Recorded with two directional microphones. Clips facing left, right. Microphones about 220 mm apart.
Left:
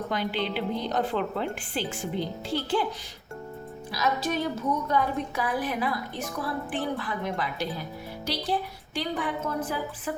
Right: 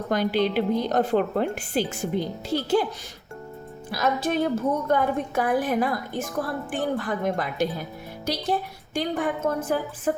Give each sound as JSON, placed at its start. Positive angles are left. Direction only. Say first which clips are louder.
{"t": 0.1, "sound": "a woman's voice", "louder": "right 9 dB", "side_deg": -45}
{"t": 3.9, "sound": "a woman's voice", "louder": "right 4 dB", "side_deg": -50}
{"t": 9.0, "sound": "a woman's voice", "louder": "right 4 dB", "side_deg": -45}